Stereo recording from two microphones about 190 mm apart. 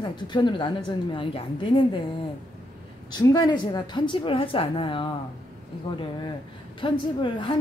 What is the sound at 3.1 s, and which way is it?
A woman's voice, 20° left (ahead or behind).